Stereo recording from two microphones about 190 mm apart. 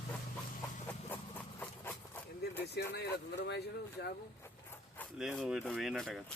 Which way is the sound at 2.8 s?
60° left (ahead or behind).